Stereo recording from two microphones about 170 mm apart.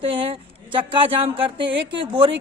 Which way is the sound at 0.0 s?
30° right (ahead or behind).